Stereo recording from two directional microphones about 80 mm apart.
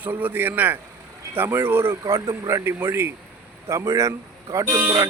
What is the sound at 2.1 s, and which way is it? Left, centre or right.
A man's voice, right.